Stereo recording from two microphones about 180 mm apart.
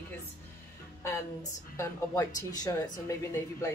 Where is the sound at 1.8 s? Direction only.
20° left (ahead or behind).